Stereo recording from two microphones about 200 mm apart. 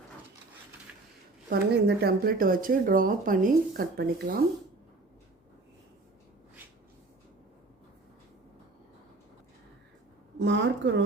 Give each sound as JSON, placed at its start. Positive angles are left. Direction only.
{"t": 0.9, "sound": "a sound", "side_deg": -5}
{"t": 1.5, "sound": "speech", "side_deg": -50}
{"t": 10.4, "sound": "a woman's voice", "side_deg": -65}